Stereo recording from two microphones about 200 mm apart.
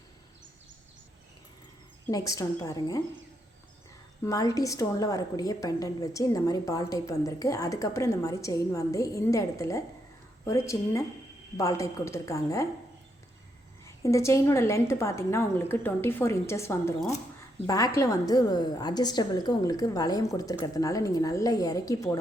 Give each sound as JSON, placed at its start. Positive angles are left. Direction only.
{"t": 2.0, "sound": "a woman's voice", "side_deg": 15}
{"t": 4.2, "sound": "a woman's voice", "side_deg": 15}
{"t": 13.8, "sound": "a woman's voice", "side_deg": 15}